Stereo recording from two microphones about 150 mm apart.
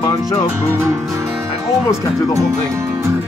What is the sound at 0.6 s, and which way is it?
Music, 20° right (ahead or behind).